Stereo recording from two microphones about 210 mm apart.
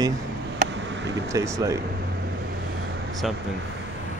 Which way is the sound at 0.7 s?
60° right (ahead or behind).